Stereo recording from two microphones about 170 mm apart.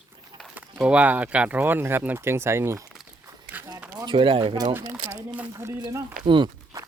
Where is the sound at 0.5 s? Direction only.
10° right (ahead or behind).